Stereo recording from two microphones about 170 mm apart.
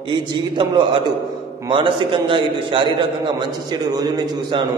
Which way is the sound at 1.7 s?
30° right (ahead or behind).